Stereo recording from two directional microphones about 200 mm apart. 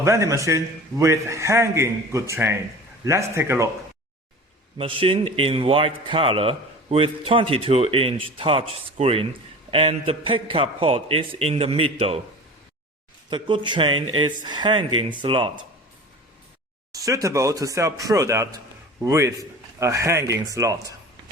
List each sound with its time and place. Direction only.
0.0 s a man's voice: 15° right (ahead or behind)
4.8 s a man's voice: 25° right (ahead or behind)
13.3 s a man's voice: 25° right (ahead or behind)
16.9 s a man's voice: 15° right (ahead or behind)